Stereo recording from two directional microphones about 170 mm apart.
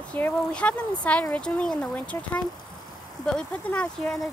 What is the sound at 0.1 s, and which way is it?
A woman's voice, 10° left (ahead or behind).